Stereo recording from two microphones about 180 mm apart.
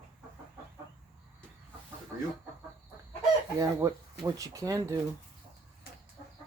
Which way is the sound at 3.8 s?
15° right (ahead or behind).